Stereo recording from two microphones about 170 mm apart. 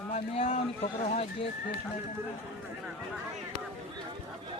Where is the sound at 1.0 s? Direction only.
40° left (ahead or behind).